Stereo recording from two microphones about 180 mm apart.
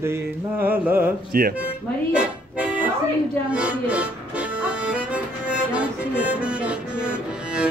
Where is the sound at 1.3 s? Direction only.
55° right (ahead or behind).